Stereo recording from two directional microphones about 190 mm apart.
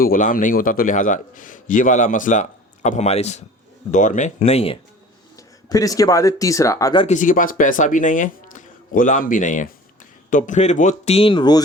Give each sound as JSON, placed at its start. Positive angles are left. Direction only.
{"t": 0.0, "sound": "a man's voice", "side_deg": 45}
{"t": 5.4, "sound": "speech", "side_deg": 20}
{"t": 7.1, "sound": "a man's voice", "side_deg": 45}